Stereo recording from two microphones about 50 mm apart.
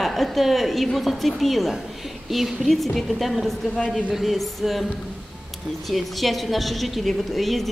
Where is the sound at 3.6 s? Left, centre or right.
Left.